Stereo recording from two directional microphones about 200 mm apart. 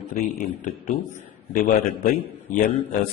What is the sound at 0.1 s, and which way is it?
Speech, 40° left (ahead or behind).